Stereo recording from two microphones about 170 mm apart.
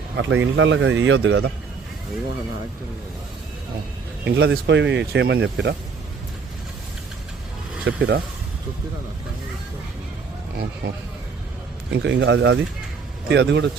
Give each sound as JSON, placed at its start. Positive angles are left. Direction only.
{"t": 0.2, "sound": "speech", "side_deg": -90}
{"t": 4.3, "sound": "speech", "side_deg": -90}
{"t": 7.9, "sound": "speech", "side_deg": -90}
{"t": 10.8, "sound": "speech", "side_deg": -60}
{"t": 11.9, "sound": "speech", "side_deg": -90}